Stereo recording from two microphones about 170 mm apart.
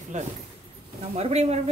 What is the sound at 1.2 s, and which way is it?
Speech, 40° right (ahead or behind).